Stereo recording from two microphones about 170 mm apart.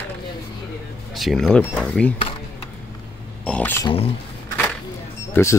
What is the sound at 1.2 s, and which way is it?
Speech, centre (ahead or behind).